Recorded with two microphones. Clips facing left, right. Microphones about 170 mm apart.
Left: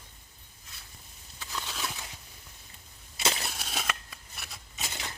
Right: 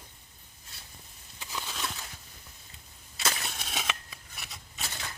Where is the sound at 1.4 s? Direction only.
15° right (ahead or behind).